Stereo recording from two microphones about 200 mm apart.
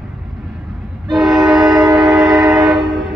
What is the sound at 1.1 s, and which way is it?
Train, centre (ahead or behind).